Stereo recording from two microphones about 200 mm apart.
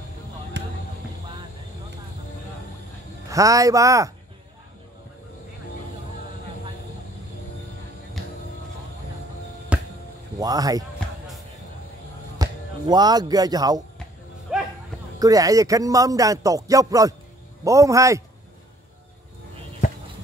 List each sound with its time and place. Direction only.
0.6 s a sound: 60° right (ahead or behind)
3.3 s speech: 15° right (ahead or behind)
9.7 s music: 5° right (ahead or behind)
10.4 s speech: 20° right (ahead or behind)
12.4 s speech: 20° right (ahead or behind)
14.5 s a sound: 5° right (ahead or behind)
15.1 s speech: 15° right (ahead or behind)